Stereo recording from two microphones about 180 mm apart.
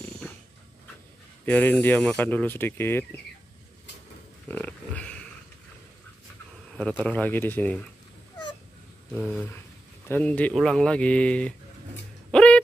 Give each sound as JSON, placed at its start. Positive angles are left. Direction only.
{"t": 1.4, "sound": "speech", "side_deg": 10}
{"t": 4.5, "sound": "pig", "side_deg": 10}
{"t": 6.8, "sound": "speech", "side_deg": 5}
{"t": 9.1, "sound": "a sound", "side_deg": 5}
{"t": 10.0, "sound": "speech", "side_deg": 10}
{"t": 12.3, "sound": "music", "side_deg": 5}